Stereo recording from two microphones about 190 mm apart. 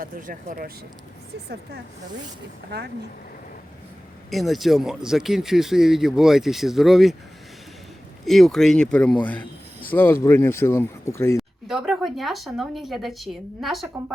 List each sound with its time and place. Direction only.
0.0 s speech: 45° right (ahead or behind)
2.6 s speech: 60° right (ahead or behind)
4.3 s speech: centre (ahead or behind)
8.2 s speech: centre (ahead or behind)
11.3 s speech: centre (ahead or behind)